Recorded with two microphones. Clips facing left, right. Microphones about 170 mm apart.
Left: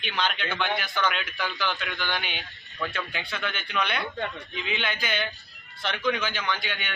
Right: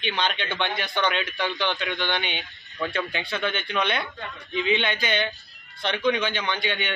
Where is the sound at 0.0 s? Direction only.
25° right (ahead or behind).